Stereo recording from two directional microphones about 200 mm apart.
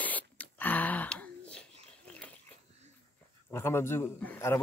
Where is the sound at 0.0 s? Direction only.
10° left (ahead or behind).